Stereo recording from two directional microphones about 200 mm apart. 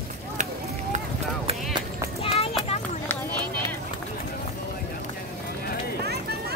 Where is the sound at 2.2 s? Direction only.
30° left (ahead or behind).